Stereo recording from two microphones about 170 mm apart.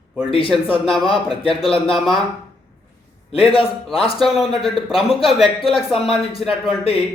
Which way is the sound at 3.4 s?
30° left (ahead or behind).